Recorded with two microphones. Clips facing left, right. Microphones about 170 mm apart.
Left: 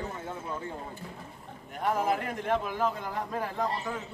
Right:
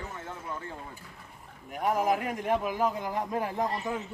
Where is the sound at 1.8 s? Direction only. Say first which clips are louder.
Right 1 dB; 10° right (ahead or behind).